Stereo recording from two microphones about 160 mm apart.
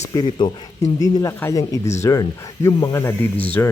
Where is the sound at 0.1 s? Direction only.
25° left (ahead or behind).